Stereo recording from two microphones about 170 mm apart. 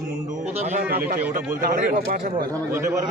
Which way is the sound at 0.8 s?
60° right (ahead or behind).